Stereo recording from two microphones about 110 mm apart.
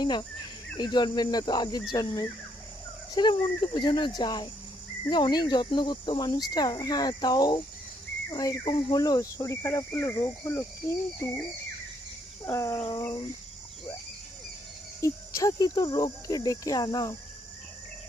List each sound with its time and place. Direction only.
0.0 s speech: 40° left (ahead or behind); by 10.9 s 25° left (ahead or behind)
12.5 s speech: 30° left (ahead or behind)
15.0 s speech: 30° left (ahead or behind)